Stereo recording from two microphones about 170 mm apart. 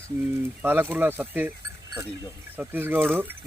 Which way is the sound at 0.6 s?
10° right (ahead or behind).